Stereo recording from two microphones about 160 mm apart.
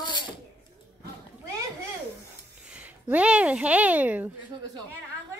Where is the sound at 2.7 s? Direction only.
10° right (ahead or behind).